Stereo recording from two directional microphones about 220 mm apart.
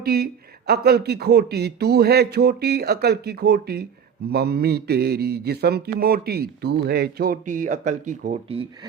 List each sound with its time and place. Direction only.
0.0 s speech: 45° right (ahead or behind)
0.9 s mantra: 45° right (ahead or behind); by 8.9 s 25° right (ahead or behind)